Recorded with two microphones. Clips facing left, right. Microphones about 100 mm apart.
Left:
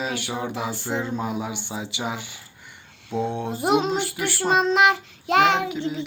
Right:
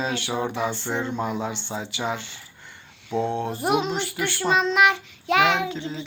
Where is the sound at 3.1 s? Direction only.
55° right (ahead or behind).